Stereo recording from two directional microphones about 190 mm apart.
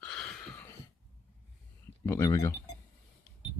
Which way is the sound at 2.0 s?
15° left (ahead or behind).